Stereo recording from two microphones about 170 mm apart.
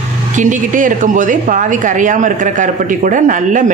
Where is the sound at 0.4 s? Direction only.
50° right (ahead or behind).